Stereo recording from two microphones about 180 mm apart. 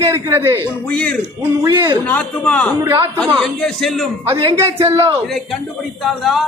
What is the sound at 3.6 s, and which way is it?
Music, centre (ahead or behind).